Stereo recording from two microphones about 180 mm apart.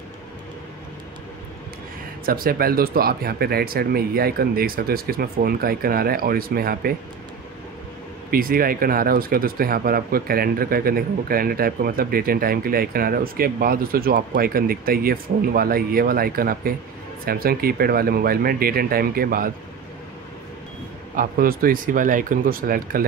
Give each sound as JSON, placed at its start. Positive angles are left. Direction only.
{"t": 2.2, "sound": "speech", "side_deg": -55}
{"t": 8.3, "sound": "speech", "side_deg": -55}
{"t": 21.2, "sound": "speech", "side_deg": -55}